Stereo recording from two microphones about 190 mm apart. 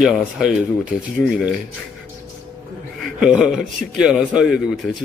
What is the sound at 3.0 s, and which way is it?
A man's voice, centre (ahead or behind).